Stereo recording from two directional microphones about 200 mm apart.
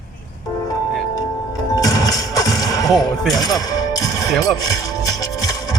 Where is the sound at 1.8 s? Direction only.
20° left (ahead or behind).